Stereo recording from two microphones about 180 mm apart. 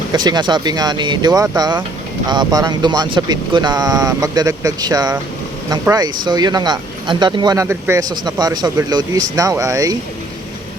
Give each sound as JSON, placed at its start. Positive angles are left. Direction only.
{"t": 0.1, "sound": "speech", "side_deg": -25}